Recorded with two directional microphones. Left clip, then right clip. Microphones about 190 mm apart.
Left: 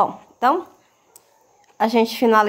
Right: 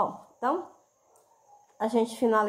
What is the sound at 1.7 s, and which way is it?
Speech, 25° left (ahead or behind).